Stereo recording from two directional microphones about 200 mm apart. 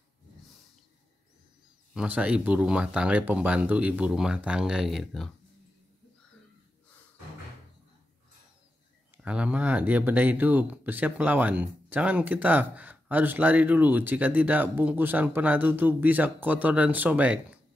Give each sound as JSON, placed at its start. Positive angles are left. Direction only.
{"t": 2.0, "sound": "speech", "side_deg": -5}
{"t": 9.1, "sound": "speech", "side_deg": -5}